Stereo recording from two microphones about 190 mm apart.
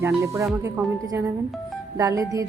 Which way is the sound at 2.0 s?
15° right (ahead or behind).